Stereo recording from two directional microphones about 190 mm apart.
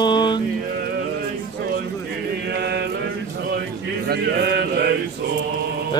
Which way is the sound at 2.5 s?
60° right (ahead or behind).